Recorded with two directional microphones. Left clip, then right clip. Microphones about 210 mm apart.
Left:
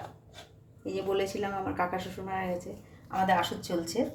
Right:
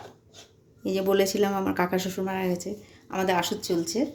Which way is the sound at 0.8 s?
60° right (ahead or behind).